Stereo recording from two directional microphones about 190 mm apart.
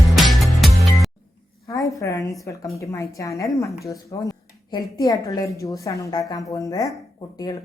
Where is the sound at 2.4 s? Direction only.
15° left (ahead or behind).